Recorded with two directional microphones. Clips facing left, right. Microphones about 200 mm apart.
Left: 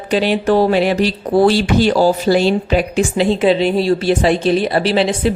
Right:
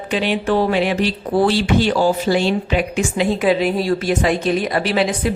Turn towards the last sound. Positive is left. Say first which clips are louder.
# left 3 dB
turn(degrees=30)  # may be behind; listen again after turning